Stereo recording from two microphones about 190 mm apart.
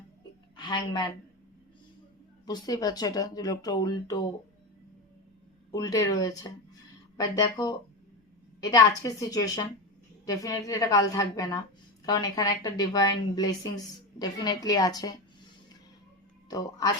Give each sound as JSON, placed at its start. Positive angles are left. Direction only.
{"t": 0.5, "sound": "a woman's voice", "side_deg": 25}
{"t": 2.5, "sound": "a woman's voice", "side_deg": 20}
{"t": 5.7, "sound": "a woman's voice", "side_deg": 20}
{"t": 16.5, "sound": "a woman's voice", "side_deg": 20}